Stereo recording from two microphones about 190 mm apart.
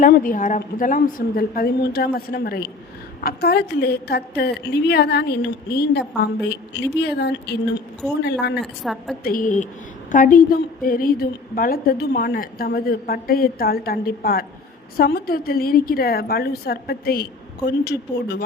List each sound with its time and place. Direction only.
0.0 s a woman's voice: 45° left (ahead or behind); by 8.5 s 60° left (ahead or behind)
8.6 s a woman's voice: centre (ahead or behind)
9.2 s a woman's voice: 45° left (ahead or behind)